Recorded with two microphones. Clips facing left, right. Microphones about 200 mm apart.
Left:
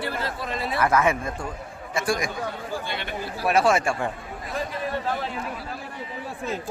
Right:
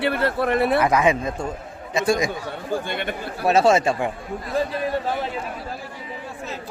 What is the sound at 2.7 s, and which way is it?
Speech, 55° right (ahead or behind).